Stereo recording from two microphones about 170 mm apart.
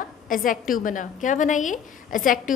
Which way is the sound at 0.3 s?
55° left (ahead or behind).